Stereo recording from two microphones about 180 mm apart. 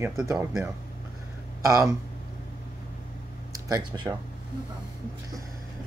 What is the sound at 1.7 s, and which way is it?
Speech, 20° right (ahead or behind).